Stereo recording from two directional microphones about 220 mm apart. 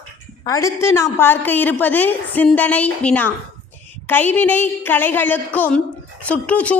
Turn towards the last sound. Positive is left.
turn(degrees=5)  # may be behind; listen again after turning